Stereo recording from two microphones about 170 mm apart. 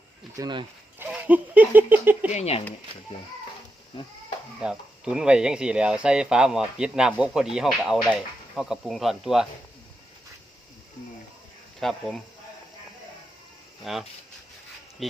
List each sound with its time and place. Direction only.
0.3 s speech: 25° right (ahead or behind)
0.9 s speech: 10° right (ahead or behind)
2.3 s speech: 40° left (ahead or behind)
4.6 s speech: 5° right (ahead or behind)
11.8 s speech: centre (ahead or behind)
13.8 s speech: centre (ahead or behind)